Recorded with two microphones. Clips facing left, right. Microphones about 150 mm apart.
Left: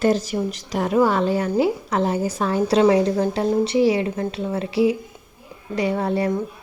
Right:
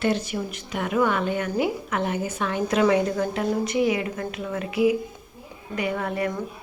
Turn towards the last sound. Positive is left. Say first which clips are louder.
# left 5 dB
turn(degrees=30)  # may be behind; listen again after turning